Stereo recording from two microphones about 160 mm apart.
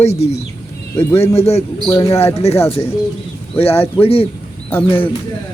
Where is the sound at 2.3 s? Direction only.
40° left (ahead or behind).